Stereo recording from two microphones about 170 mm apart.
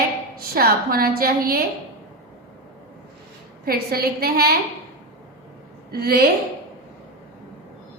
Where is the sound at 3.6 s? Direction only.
65° right (ahead or behind).